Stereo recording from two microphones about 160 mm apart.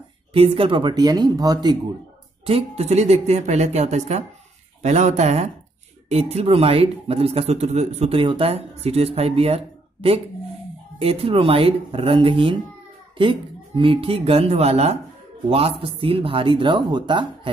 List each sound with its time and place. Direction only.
0.3 s speech: 35° right (ahead or behind)
2.4 s speech: 40° right (ahead or behind)